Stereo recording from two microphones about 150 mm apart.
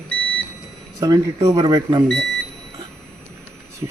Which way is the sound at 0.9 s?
25° right (ahead or behind).